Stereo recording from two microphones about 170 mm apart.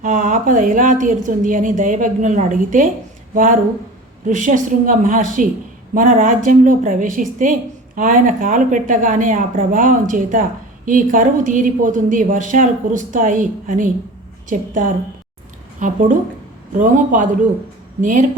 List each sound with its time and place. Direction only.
0.0 s a woman's voice: 50° right (ahead or behind)